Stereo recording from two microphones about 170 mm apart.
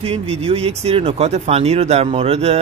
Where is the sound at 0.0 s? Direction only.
35° right (ahead or behind).